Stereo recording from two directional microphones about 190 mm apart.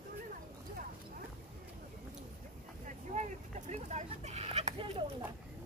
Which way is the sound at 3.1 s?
35° right (ahead or behind).